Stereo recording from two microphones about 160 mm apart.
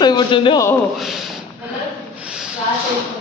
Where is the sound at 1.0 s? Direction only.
Centre (ahead or behind).